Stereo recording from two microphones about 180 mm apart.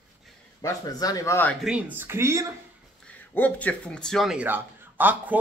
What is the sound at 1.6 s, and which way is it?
Speech, 5° right (ahead or behind).